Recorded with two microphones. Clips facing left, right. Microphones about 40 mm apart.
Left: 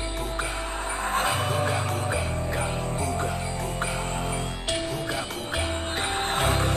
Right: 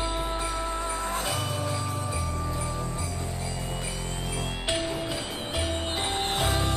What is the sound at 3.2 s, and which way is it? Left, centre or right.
Music, left.